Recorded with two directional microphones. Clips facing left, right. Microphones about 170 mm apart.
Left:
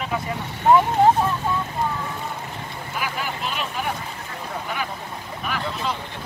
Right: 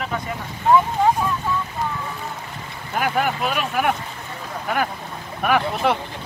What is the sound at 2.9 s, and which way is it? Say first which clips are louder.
Speech: right 8 dB; 55° right (ahead or behind).